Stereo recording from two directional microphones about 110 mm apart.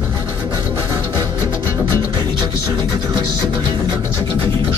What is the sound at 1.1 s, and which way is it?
Music, 25° left (ahead or behind).